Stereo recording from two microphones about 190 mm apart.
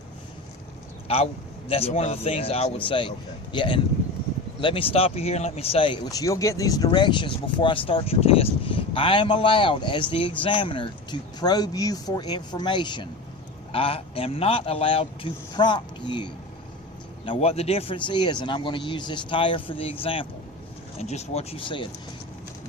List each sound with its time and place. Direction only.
1.0 s a man's voice: 30° left (ahead or behind)